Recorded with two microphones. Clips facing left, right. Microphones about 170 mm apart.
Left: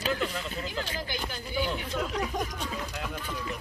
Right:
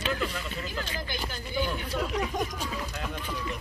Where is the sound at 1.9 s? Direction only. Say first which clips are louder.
Right 1 dB; 5° right (ahead or behind).